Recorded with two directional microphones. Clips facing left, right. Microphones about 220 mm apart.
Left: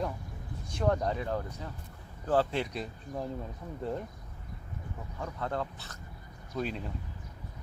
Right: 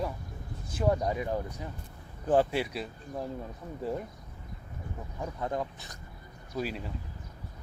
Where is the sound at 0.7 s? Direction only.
5° right (ahead or behind).